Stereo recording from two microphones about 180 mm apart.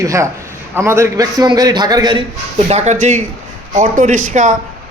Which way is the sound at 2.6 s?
40° right (ahead or behind).